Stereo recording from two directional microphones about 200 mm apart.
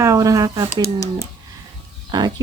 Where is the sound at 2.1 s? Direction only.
20° right (ahead or behind).